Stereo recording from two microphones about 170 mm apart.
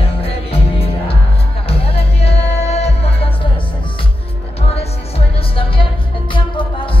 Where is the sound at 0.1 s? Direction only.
35° left (ahead or behind).